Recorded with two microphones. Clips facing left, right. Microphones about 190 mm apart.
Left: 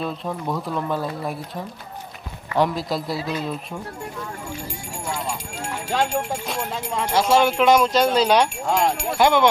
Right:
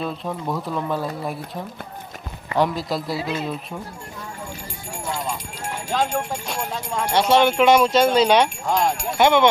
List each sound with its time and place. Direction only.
0.0 s speech: centre (ahead or behind)
2.6 s speech: centre (ahead or behind)
3.2 s speech: 25° right (ahead or behind)
3.4 s speech: centre (ahead or behind)
6.1 s speech: 10° left (ahead or behind)